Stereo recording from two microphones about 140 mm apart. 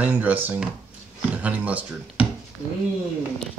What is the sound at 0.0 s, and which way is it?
A child's voice, 10° right (ahead or behind).